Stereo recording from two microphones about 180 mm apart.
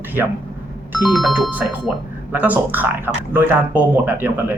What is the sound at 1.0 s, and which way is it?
Speech, centre (ahead or behind).